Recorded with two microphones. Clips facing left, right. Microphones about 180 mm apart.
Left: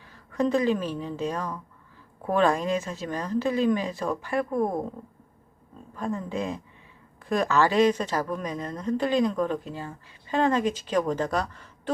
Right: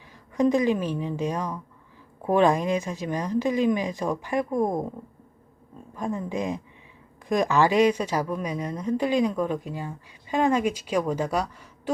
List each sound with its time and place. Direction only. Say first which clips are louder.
0.1 s a woman's voice: right 3 dB; 15° right (ahead or behind)
5.9 s speech: right 1 dB; 15° right (ahead or behind)